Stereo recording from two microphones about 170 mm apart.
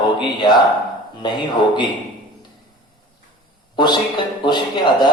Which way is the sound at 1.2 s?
25° left (ahead or behind).